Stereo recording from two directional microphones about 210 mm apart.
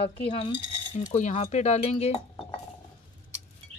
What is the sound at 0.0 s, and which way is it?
Speech, 25° left (ahead or behind).